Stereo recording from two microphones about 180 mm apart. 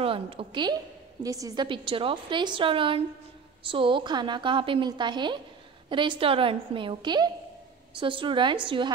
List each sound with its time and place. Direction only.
0.0 s a woman's voice: 30° right (ahead or behind)